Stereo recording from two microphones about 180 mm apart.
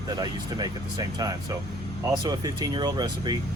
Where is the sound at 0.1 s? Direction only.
25° right (ahead or behind).